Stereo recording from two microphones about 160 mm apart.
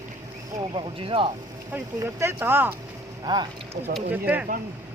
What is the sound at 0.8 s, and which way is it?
Speech, 35° right (ahead or behind).